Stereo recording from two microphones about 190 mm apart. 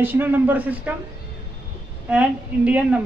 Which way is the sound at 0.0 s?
10° right (ahead or behind).